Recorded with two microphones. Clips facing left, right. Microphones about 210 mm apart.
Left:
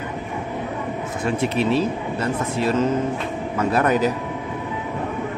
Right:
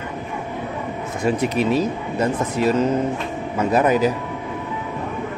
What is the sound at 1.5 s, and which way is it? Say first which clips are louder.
Speech: right 1 dB; 40° right (ahead or behind).